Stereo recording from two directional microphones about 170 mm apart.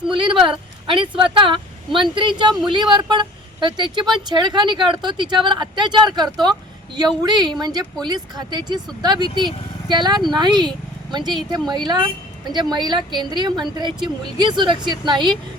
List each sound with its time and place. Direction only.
0.1 s speech: 30° right (ahead or behind)